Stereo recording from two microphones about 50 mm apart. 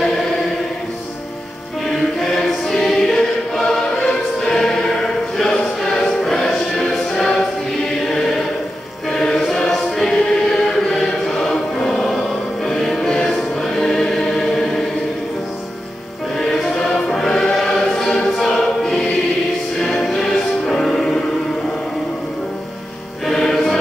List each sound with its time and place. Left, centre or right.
2.1 s choir: centre
5.4 s music: centre
9.1 s choir: centre
13.3 s music: centre
13.8 s choir: centre
16.3 s music: centre
18.4 s choir: centre
19.8 s music: centre
23.2 s music: centre